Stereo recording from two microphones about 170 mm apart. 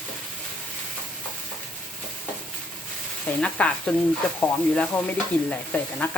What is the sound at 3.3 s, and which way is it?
Speech, 10° left (ahead or behind).